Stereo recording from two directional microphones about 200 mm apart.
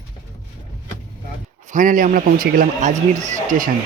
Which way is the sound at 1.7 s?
40° right (ahead or behind).